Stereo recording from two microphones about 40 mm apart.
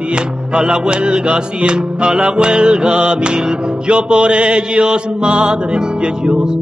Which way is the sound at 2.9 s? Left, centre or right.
Right.